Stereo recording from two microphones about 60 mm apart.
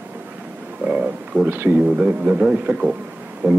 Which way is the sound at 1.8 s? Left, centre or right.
Centre.